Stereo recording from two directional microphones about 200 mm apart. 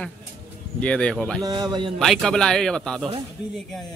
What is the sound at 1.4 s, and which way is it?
Speech, 20° right (ahead or behind).